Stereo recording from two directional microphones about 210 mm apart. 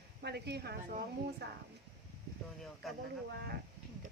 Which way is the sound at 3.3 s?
50° right (ahead or behind).